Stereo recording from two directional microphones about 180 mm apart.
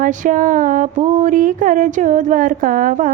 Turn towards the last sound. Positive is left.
turn(degrees=-45)  # may be behind; listen again after turning